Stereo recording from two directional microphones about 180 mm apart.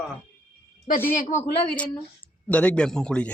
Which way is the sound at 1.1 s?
40° left (ahead or behind).